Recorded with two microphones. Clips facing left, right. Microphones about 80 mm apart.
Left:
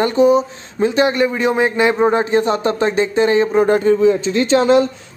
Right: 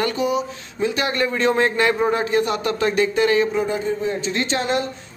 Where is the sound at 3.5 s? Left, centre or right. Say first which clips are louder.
Left 9 dB; left.